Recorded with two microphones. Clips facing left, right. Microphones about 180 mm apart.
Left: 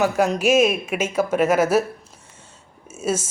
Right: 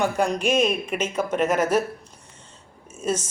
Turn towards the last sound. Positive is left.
turn(degrees=10)  # may be behind; listen again after turning